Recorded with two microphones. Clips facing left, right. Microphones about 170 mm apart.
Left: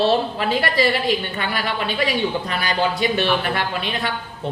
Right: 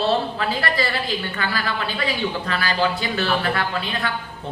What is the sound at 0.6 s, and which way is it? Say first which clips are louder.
A woman's voice: left 4 dB; 25° left (ahead or behind).